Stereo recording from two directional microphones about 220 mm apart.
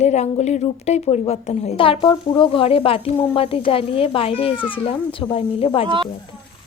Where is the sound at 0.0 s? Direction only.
30° left (ahead or behind).